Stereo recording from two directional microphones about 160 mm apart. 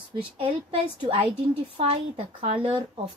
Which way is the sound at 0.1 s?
30° right (ahead or behind).